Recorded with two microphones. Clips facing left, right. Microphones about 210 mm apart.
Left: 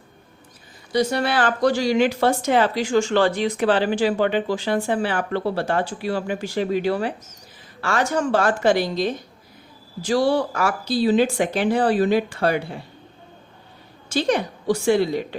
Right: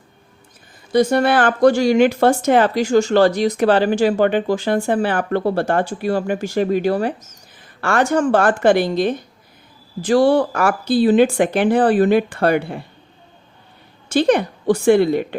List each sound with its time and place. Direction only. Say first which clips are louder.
0.9 s speech: right 6 dB; 50° right (ahead or behind)
14.1 s speech: right 6 dB; 55° right (ahead or behind)